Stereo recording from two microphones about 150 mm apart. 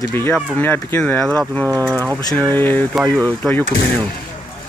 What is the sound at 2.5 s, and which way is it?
Speech, 15° left (ahead or behind).